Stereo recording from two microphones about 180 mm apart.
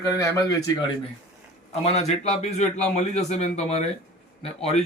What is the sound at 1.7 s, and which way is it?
Speech, 35° left (ahead or behind).